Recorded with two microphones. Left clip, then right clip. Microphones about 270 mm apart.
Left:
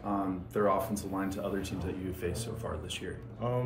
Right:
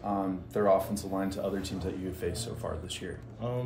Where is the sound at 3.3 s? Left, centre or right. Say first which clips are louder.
Left 2 dB; centre.